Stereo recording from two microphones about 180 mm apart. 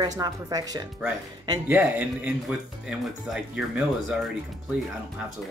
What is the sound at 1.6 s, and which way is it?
Speech, 10° right (ahead or behind).